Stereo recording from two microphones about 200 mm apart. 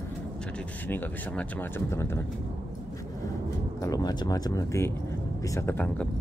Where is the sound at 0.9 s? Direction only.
10° left (ahead or behind).